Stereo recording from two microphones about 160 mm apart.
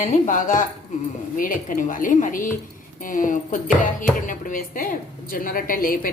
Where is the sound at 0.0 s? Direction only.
50° left (ahead or behind).